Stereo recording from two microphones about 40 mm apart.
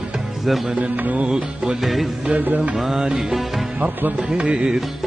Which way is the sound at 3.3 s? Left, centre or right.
Centre.